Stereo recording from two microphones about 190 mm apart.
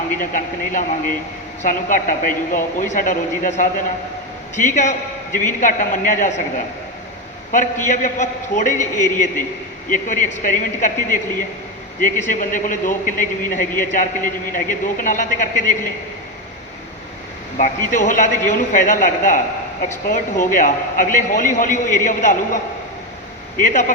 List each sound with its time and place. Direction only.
0.2 s a man's voice: 45° left (ahead or behind)
4.5 s a man's voice: 40° left (ahead or behind)
7.5 s a man's voice: 40° left (ahead or behind)
17.9 s a man's voice: 40° left (ahead or behind)